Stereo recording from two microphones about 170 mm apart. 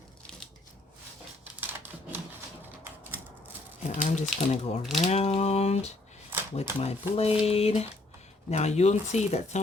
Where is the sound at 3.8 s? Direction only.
45° left (ahead or behind).